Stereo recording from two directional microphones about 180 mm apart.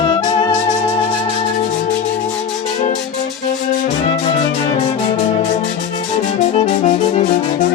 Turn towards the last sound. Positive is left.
turn(degrees=40)  # may be behind; listen again after turning